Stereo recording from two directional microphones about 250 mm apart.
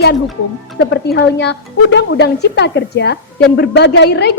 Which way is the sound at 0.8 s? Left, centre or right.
Left.